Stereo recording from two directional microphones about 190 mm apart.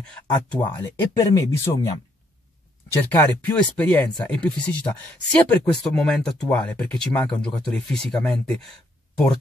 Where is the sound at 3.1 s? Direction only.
10° left (ahead or behind).